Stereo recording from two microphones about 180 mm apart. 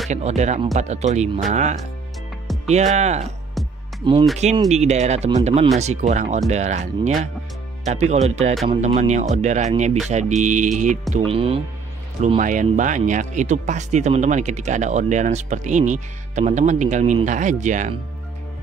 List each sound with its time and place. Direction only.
0.1 s speech: 40° right (ahead or behind)
2.4 s music: centre (ahead or behind)
2.7 s speech: 40° right (ahead or behind)
3.6 s music: centre (ahead or behind)
4.0 s speech: 25° right (ahead or behind)
4.6 s speech: 40° right (ahead or behind)
11.1 s speech: 30° right (ahead or behind)
12.4 s speech: 45° right (ahead or behind)